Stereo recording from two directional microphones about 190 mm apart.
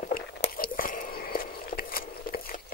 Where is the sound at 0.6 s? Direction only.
45° left (ahead or behind).